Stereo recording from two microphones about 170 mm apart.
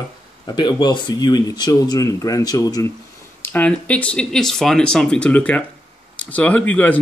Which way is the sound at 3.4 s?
10° left (ahead or behind).